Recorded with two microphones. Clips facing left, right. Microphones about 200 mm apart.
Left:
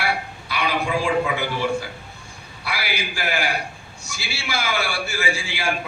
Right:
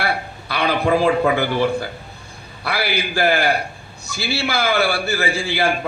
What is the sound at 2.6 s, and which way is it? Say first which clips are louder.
A man's voice: right 6 dB; 60° right (ahead or behind).